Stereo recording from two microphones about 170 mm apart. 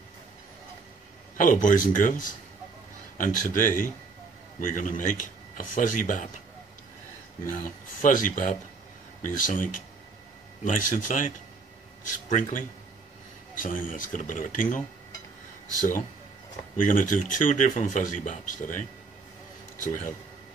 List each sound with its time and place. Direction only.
1.4 s speech: 50° left (ahead or behind)
7.4 s speech: 50° left (ahead or behind)
16.8 s speech: 50° left (ahead or behind)